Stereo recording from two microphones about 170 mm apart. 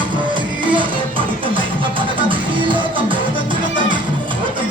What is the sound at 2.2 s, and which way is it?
Music, 30° right (ahead or behind).